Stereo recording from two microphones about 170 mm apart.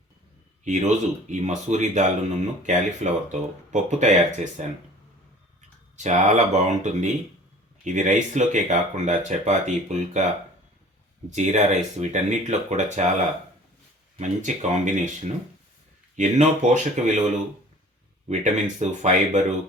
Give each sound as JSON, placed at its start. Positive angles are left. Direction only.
{"t": 0.6, "sound": "speech", "side_deg": -45}
{"t": 6.0, "sound": "speech", "side_deg": -45}
{"t": 11.3, "sound": "speech", "side_deg": -45}
{"t": 14.2, "sound": "speech", "side_deg": -45}
{"t": 16.1, "sound": "speech", "side_deg": -45}
{"t": 18.3, "sound": "speech", "side_deg": -45}